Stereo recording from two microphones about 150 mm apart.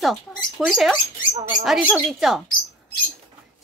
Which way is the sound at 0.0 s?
Centre (ahead or behind).